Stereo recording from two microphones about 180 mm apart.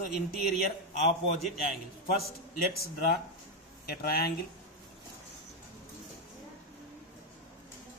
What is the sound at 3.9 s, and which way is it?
Speech, 60° left (ahead or behind).